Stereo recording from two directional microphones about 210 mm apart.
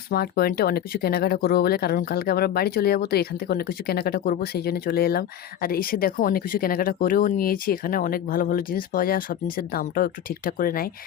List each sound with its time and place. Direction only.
0.1 s speech: 45° left (ahead or behind)